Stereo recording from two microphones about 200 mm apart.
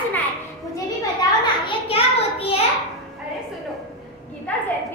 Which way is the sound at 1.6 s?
30° left (ahead or behind).